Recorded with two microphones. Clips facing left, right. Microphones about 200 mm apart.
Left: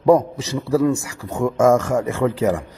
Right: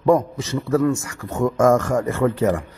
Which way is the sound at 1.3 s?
10° left (ahead or behind).